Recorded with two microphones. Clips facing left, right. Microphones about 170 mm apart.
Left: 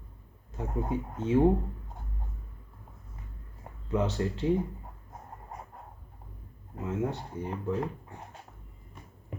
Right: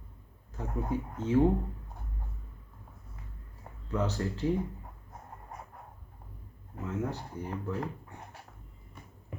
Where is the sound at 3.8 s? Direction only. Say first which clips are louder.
Left 3 dB; 20° left (ahead or behind).